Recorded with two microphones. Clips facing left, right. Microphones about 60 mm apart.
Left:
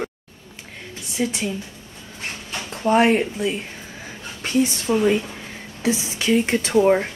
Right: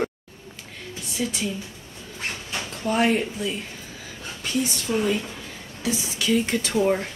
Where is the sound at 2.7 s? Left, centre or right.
Left.